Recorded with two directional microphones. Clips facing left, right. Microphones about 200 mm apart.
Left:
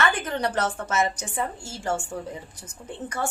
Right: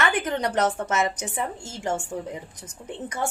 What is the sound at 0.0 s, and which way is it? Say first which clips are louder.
Speech: right 1 dB; 20° right (ahead or behind).